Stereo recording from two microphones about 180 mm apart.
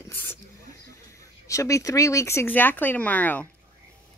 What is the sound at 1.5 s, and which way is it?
Speech, 15° left (ahead or behind).